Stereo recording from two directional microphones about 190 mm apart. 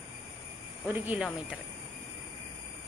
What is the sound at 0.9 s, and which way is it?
Speech, 10° right (ahead or behind).